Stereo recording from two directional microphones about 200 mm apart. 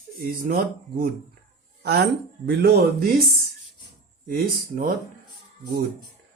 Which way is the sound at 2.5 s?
50° right (ahead or behind).